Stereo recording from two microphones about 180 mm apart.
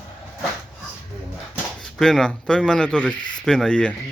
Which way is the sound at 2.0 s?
5° left (ahead or behind).